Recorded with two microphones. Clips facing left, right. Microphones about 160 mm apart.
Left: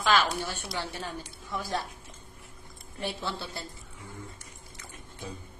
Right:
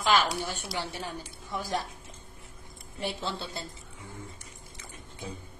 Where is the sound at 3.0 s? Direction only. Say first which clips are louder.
Right 1 dB; 15° right (ahead or behind).